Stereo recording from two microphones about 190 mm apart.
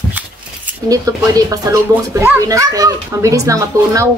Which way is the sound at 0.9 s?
20° right (ahead or behind).